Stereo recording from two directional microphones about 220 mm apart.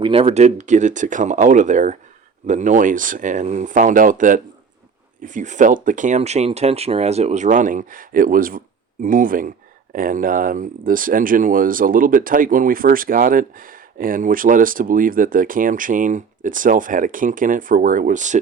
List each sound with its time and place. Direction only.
0.0 s speech: 25° right (ahead or behind)